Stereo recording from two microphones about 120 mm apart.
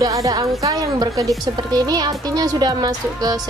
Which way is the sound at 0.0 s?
30° right (ahead or behind).